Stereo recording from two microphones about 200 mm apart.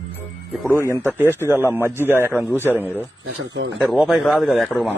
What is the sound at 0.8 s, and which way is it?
Speech, 10° right (ahead or behind).